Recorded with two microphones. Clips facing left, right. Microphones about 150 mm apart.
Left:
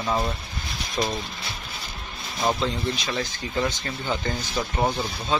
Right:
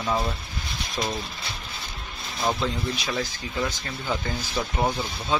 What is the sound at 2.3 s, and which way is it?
Speech, centre (ahead or behind).